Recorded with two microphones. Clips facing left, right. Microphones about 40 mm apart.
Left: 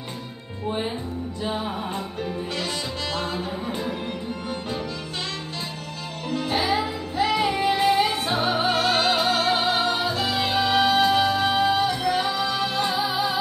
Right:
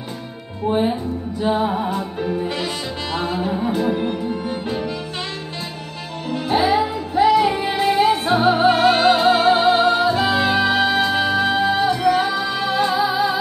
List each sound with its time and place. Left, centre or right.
0.7 s music: centre
6.2 s music: centre